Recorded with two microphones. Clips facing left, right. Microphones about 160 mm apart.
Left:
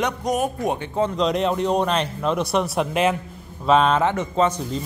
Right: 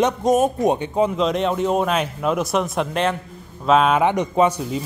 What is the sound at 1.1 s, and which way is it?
Speech, centre (ahead or behind).